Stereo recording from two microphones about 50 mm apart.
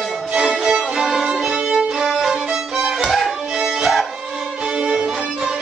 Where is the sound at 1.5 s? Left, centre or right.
Centre.